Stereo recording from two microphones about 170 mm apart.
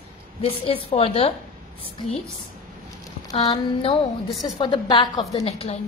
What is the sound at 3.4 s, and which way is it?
A woman's voice, 35° left (ahead or behind).